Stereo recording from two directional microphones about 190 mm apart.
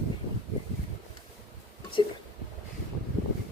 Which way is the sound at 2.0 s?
25° left (ahead or behind).